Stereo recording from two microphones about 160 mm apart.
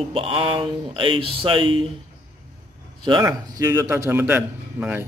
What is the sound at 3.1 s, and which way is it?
A man's voice, 20° right (ahead or behind).